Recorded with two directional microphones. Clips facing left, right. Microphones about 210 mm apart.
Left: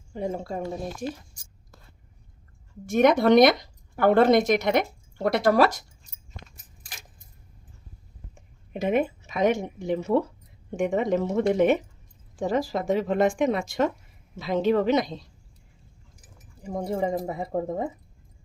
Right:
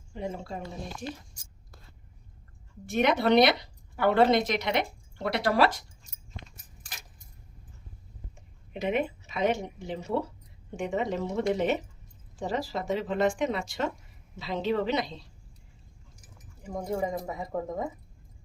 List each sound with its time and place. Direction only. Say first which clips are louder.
0.1 s speech: left 5 dB; 45° left (ahead or behind)
2.8 s speech: left 6 dB; 45° left (ahead or behind)
8.4 s speech: left 4 dB; 45° left (ahead or behind)
16.7 s speech: left 4 dB; 30° left (ahead or behind)